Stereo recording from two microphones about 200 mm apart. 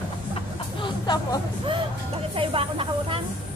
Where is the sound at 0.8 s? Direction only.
20° left (ahead or behind).